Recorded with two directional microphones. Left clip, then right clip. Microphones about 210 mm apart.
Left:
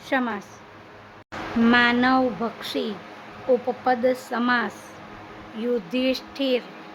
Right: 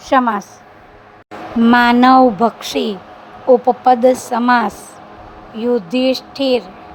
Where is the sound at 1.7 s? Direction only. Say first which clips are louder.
Right 10 dB; 30° right (ahead or behind).